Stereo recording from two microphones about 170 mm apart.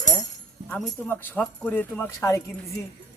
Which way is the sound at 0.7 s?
10° left (ahead or behind).